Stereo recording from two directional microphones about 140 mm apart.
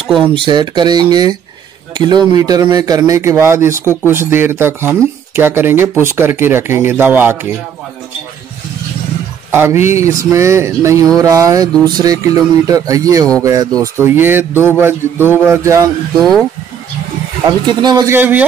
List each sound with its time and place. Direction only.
0.2 s speech: 35° right (ahead or behind); by 7.5 s 15° right (ahead or behind)
9.5 s speech: 15° right (ahead or behind)
16.2 s speech: centre (ahead or behind)
17.5 s speech: 30° right (ahead or behind)
18.1 s speech: 15° right (ahead or behind)